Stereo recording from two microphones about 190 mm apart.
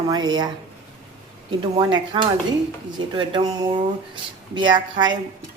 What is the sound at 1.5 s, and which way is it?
Speech, 25° right (ahead or behind).